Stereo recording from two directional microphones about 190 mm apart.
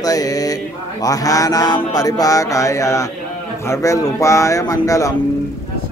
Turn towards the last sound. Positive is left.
turn(degrees=15)  # may be behind; listen again after turning